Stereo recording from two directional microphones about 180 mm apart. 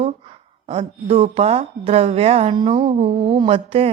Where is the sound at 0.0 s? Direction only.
35° right (ahead or behind).